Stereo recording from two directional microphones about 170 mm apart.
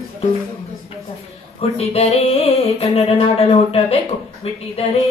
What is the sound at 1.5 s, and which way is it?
Speech, 35° left (ahead or behind).